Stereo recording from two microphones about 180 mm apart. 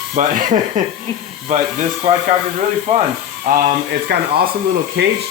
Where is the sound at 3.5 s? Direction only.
45° right (ahead or behind).